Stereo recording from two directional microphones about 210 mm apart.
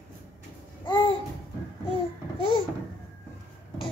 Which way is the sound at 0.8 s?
20° left (ahead or behind).